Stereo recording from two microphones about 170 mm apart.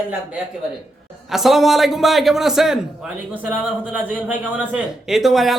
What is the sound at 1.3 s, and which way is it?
Speech, centre (ahead or behind).